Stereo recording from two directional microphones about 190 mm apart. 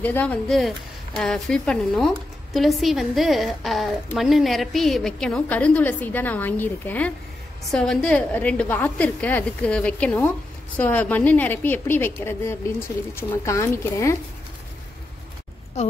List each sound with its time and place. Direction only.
0.0 s a woman's voice: 10° left (ahead or behind)